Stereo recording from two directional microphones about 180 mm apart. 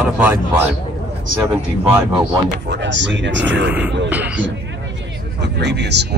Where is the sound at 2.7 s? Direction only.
85° right.